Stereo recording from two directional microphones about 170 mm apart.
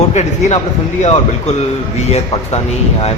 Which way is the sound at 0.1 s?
40° left (ahead or behind).